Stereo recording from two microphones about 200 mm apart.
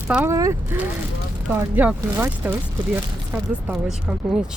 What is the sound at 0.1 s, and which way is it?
Speech, 5° right (ahead or behind).